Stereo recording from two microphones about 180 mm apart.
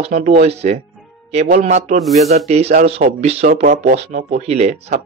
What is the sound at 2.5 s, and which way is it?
A man's voice, 35° right (ahead or behind).